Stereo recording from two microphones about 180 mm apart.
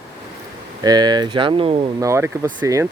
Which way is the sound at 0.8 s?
20° right (ahead or behind).